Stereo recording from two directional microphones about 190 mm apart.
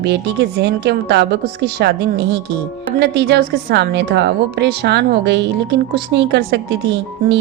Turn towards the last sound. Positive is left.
turn(degrees=-65)  # may be behind; listen again after turning